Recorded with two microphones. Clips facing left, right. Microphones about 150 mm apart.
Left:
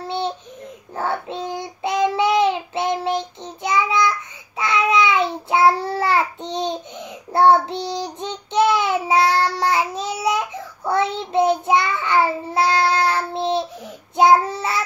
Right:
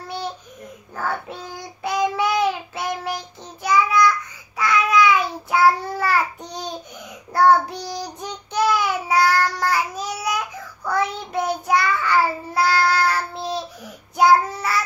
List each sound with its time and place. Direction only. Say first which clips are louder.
0.9 s child singing: left 3 dB; 25° left (ahead or behind)